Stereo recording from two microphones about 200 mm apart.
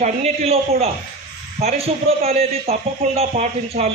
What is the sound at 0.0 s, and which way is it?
A man's voice, 30° right (ahead or behind).